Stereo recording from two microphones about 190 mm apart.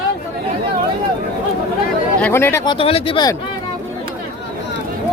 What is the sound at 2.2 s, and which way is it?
Speech, 10° left (ahead or behind).